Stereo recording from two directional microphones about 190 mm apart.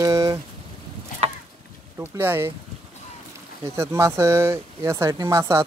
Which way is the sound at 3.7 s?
15° right (ahead or behind).